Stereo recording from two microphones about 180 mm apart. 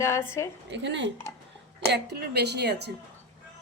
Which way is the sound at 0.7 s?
80° right.